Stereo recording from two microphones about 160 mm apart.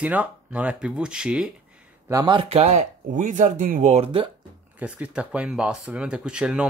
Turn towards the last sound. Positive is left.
turn(degrees=-5)  # may be behind; listen again after turning